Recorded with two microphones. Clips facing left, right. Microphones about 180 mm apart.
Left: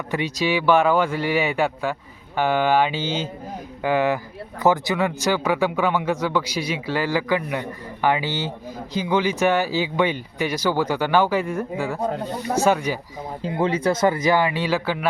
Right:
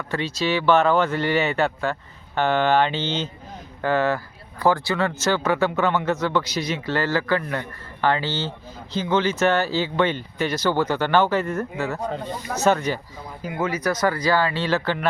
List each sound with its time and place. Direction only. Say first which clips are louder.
0.1 s speech: left 1 dB; 15° left (ahead or behind)
13.4 s speech: left 3 dB; 30° left (ahead or behind); by 14.9 s 10° left (ahead or behind)